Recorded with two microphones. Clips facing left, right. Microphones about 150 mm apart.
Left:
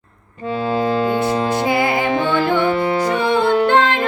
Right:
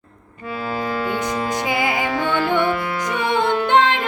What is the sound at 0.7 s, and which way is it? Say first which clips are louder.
Music: left 6 dB; 25° left (ahead or behind).